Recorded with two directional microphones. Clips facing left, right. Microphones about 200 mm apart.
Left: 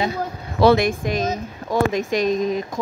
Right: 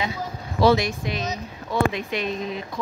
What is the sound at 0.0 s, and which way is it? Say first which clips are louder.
Speech: left 5 dB; 50° left (ahead or behind).